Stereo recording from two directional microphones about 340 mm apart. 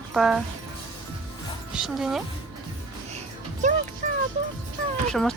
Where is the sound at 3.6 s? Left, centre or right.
Right.